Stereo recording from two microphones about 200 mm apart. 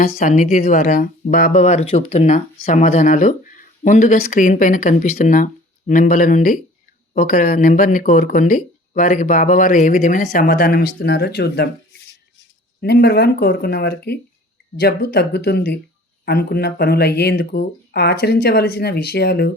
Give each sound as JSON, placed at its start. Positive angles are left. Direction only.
{"t": 0.2, "sound": "speech", "side_deg": 45}
{"t": 12.8, "sound": "speech", "side_deg": 55}